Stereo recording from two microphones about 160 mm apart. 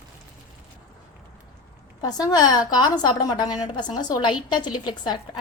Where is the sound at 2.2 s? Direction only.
25° left (ahead or behind).